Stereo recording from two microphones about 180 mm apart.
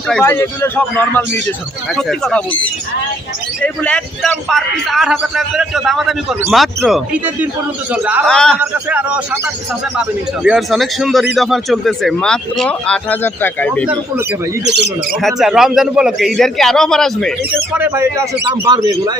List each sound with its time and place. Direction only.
0.1 s a man's voice: 10° left (ahead or behind)
3.6 s a man's voice: 5° left (ahead or behind)
8.3 s a man's voice: 5° left (ahead or behind)
8.5 s a man's voice: 10° right (ahead or behind); by 13.8 s 10° left (ahead or behind)
14.6 s a man's voice: 70° right (ahead or behind)
15.1 s a man's voice: centre (ahead or behind)
17.7 s a man's voice: 10° right (ahead or behind)